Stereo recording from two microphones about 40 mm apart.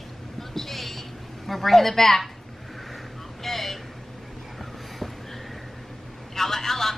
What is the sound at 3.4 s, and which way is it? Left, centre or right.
Vehicle, centre.